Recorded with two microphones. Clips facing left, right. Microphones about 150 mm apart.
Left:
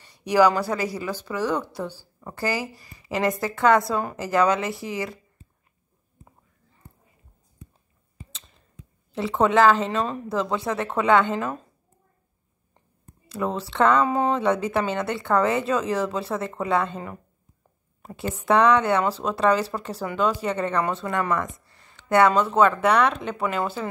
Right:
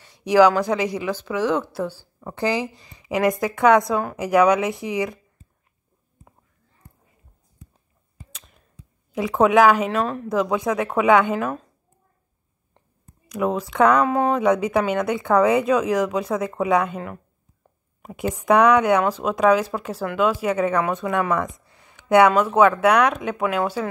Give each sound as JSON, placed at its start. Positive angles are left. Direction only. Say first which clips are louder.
{"t": 0.1, "sound": "speech", "louder": "right 3 dB", "side_deg": -10}
{"t": 1.4, "sound": "a woman's voice", "louder": "right 3 dB", "side_deg": 10}
{"t": 2.3, "sound": "speech", "louder": "right 4 dB", "side_deg": -20}
{"t": 9.1, "sound": "speech", "louder": "right 3 dB", "side_deg": -10}
{"t": 13.3, "sound": "speech", "louder": "right 4 dB", "side_deg": -10}
{"t": 18.0, "sound": "speech", "louder": "right 4 dB", "side_deg": -15}